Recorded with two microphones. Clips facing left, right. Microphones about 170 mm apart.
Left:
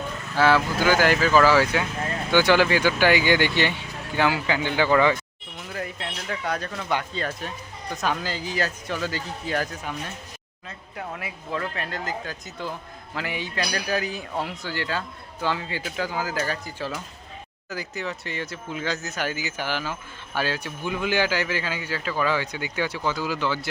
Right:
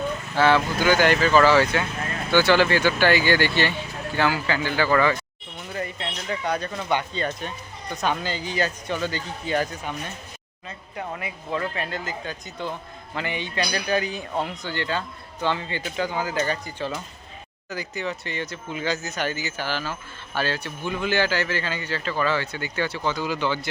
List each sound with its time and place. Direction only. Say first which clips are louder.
0.3 s a man's voice: even; 5° left (ahead or behind)
5.5 s a sound: right 2 dB; centre (ahead or behind)
6.2 s a man's voice: right 2 dB; centre (ahead or behind)